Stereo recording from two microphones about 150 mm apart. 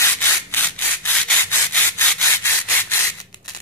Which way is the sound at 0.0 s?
15° left (ahead or behind).